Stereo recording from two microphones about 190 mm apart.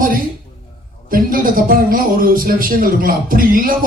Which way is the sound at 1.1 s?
45° right (ahead or behind).